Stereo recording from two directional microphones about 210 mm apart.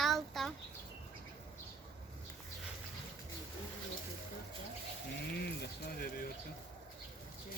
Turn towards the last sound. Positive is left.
turn(degrees=40)  # may be behind; listen again after turning